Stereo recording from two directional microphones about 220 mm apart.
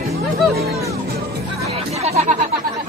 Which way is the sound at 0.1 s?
45° right (ahead or behind).